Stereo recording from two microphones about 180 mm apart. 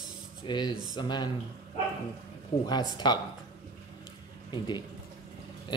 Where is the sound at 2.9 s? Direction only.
25° left (ahead or behind).